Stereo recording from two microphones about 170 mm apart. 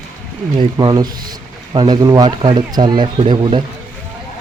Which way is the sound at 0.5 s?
25° right (ahead or behind).